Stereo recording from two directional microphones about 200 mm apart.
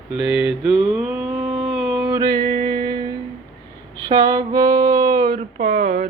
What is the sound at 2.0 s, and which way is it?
Music, 20° right (ahead or behind).